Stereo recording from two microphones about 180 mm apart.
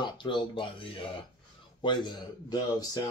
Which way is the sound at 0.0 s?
25° left (ahead or behind).